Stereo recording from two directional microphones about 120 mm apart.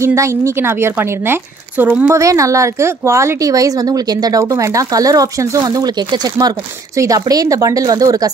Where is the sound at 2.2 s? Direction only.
25° right (ahead or behind).